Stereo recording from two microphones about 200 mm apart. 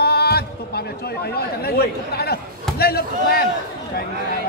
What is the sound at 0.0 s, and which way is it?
Speech, 50° left (ahead or behind).